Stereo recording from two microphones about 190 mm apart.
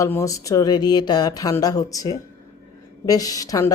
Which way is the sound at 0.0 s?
15° left (ahead or behind).